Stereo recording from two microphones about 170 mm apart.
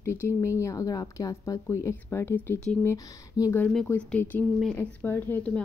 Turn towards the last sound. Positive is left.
turn(degrees=10)  # may be behind; listen again after turning